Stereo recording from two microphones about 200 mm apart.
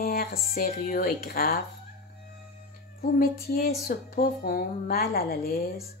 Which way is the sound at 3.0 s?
50° left (ahead or behind).